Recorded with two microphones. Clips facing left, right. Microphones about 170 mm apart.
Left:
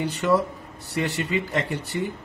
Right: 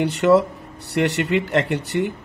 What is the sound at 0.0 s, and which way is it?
A man's voice, 70° right (ahead or behind).